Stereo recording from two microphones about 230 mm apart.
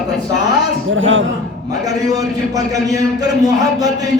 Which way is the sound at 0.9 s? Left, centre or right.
Right.